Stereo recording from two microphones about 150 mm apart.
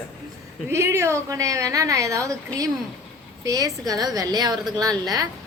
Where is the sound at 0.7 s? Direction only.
15° right (ahead or behind).